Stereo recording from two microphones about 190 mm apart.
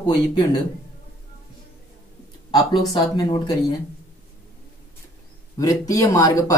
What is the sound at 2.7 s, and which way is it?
Speech, 20° left (ahead or behind).